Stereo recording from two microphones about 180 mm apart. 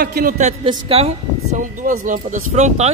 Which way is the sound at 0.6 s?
30° right (ahead or behind).